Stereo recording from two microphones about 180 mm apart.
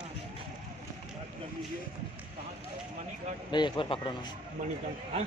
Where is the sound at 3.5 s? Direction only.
25° left (ahead or behind).